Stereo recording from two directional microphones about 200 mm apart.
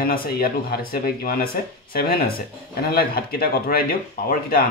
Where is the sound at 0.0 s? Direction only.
45° left (ahead or behind).